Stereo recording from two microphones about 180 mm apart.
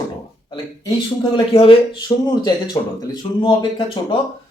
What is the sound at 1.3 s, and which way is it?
Speech, 30° left (ahead or behind).